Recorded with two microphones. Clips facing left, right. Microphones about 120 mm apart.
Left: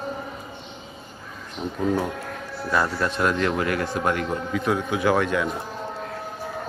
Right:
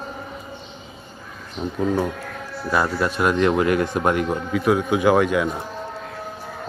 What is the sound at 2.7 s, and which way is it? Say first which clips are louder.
Speech: right 2 dB; 10° right (ahead or behind).